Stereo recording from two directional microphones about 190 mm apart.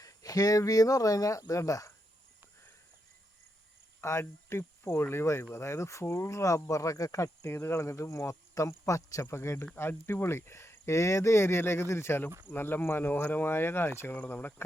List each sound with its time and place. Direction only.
0.0 s speech: 20° left (ahead or behind)
4.0 s speech: 15° left (ahead or behind)